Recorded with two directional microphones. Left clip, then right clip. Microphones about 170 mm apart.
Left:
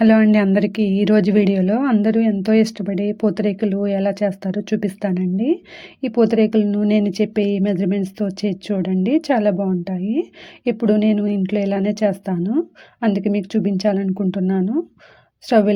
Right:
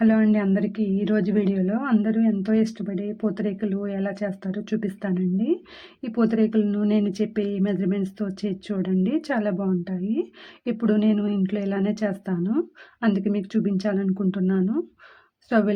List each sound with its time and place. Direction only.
0.0 s a woman's voice: 35° left (ahead or behind)